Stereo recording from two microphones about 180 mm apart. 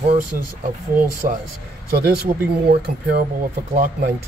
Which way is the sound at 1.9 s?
60° right (ahead or behind).